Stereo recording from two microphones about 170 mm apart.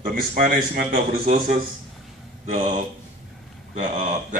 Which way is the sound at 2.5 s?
45° right (ahead or behind).